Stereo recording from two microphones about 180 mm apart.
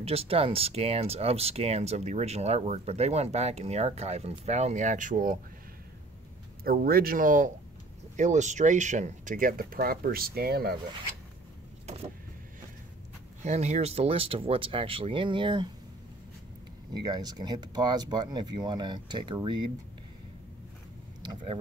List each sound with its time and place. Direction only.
0.0 s speech: 35° right (ahead or behind); by 5.4 s 50° right (ahead or behind)
6.6 s speech: 55° right (ahead or behind)
11.8 s vehicle: 35° right (ahead or behind)
13.4 s speech: 40° right (ahead or behind)
16.9 s speech: 25° right (ahead or behind)
21.3 s speech: 25° right (ahead or behind)